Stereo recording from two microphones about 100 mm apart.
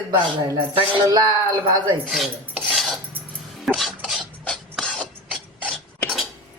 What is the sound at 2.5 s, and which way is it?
Cutlery, 5° right (ahead or behind).